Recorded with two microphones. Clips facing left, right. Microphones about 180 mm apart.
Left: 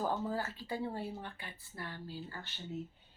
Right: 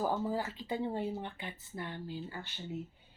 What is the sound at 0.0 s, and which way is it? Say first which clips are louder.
Speech: right 2 dB; 15° right (ahead or behind).